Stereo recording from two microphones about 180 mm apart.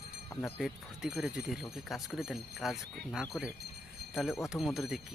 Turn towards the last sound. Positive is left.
turn(degrees=0)  # may be behind; listen again after turning